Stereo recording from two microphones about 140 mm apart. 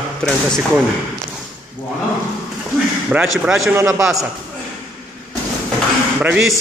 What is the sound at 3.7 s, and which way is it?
Speech, 20° right (ahead or behind).